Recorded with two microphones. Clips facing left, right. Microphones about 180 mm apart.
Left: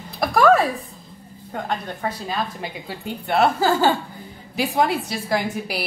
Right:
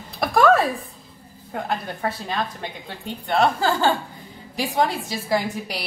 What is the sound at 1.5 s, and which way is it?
A woman's voice, 5° right (ahead or behind).